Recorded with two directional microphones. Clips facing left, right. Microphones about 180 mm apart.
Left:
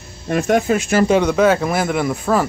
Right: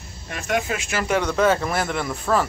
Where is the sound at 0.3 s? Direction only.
45° left (ahead or behind).